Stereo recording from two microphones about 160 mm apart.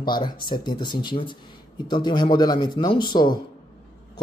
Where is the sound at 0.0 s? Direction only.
30° left (ahead or behind).